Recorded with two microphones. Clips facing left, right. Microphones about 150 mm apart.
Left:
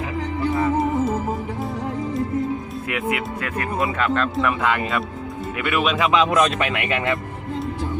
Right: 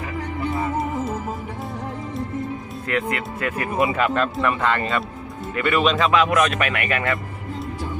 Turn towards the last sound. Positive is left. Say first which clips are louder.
# left 1 dB
turn(degrees=20)  # may be behind; listen again after turning